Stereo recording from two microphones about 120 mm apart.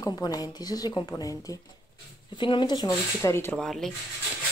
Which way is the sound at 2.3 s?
40° left (ahead or behind).